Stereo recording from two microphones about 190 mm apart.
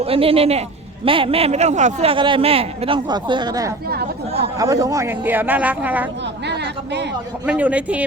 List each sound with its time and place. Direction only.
0.0 s a man's voice: 30° right (ahead or behind); by 6.1 s 10° right (ahead or behind)
7.4 s speech: 5° right (ahead or behind)